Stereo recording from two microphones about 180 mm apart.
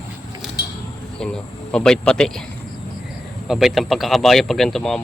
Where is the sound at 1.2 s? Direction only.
5° left (ahead or behind).